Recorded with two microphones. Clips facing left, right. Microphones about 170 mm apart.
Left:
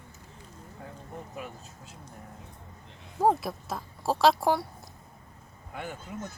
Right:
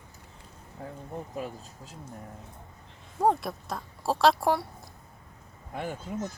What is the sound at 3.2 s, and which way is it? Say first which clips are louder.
Speech: even; centre (ahead or behind).